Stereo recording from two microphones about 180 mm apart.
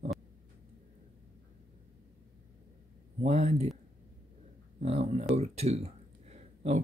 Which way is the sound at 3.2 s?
40° right (ahead or behind).